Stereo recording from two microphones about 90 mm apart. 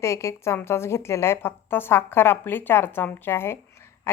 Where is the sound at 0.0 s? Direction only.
35° left (ahead or behind).